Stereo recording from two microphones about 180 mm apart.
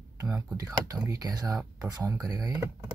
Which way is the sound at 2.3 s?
20° right (ahead or behind).